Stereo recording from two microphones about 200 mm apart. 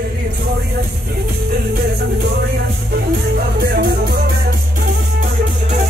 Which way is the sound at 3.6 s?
55° right (ahead or behind).